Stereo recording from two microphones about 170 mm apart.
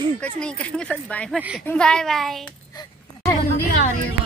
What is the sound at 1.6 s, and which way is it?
Speech, 5° left (ahead or behind).